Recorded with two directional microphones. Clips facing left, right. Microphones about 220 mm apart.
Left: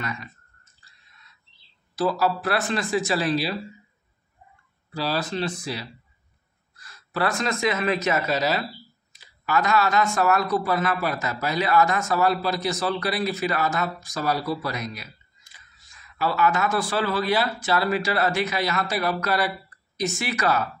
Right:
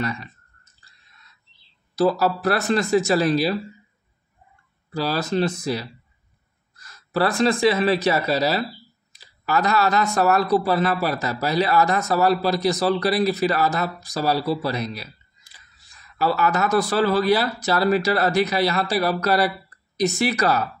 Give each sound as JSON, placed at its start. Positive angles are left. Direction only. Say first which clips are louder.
{"t": 0.0, "sound": "speech", "louder": "right 6 dB", "side_deg": -35}
{"t": 2.0, "sound": "speech", "louder": "right 4 dB", "side_deg": -40}
{"t": 4.9, "sound": "speech", "louder": "right 4 dB", "side_deg": -45}